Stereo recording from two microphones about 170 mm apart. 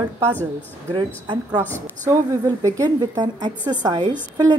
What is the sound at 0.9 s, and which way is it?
A woman's voice, 25° right (ahead or behind).